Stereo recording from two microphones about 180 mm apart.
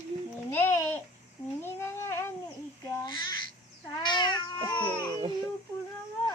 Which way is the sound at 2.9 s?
25° left (ahead or behind).